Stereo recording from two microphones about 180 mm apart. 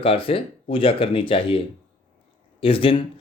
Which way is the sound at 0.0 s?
30° left (ahead or behind).